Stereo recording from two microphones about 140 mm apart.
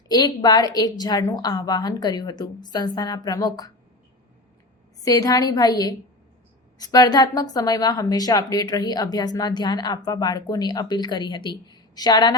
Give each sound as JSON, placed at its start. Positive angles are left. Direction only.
{"t": 0.1, "sound": "speech", "side_deg": 30}
{"t": 5.0, "sound": "speech", "side_deg": 25}